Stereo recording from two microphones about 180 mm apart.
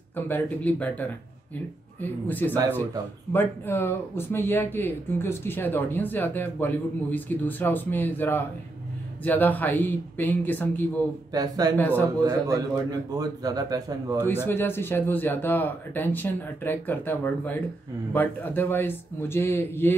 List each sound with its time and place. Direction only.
0.1 s speech: 10° left (ahead or behind)
11.3 s a man's voice: 20° right (ahead or behind)
11.7 s speech: 10° left (ahead or behind)
12.2 s a man's voice: 20° right (ahead or behind)
14.2 s speech: 10° left (ahead or behind)